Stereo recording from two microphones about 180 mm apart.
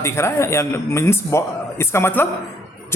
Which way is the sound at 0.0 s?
15° left (ahead or behind).